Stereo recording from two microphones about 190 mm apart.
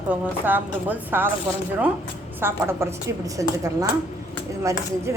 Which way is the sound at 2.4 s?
15° right (ahead or behind).